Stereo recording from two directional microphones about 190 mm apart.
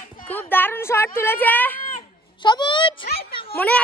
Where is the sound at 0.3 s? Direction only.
10° left (ahead or behind).